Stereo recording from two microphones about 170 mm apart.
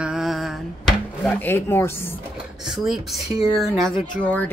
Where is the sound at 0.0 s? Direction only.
Centre (ahead or behind).